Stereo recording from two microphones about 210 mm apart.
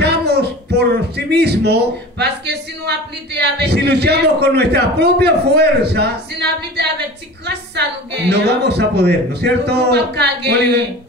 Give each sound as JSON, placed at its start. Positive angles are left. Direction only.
{"t": 0.0, "sound": "speech", "side_deg": -50}